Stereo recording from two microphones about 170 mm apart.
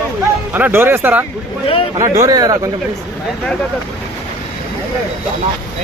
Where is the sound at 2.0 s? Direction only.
20° right (ahead or behind).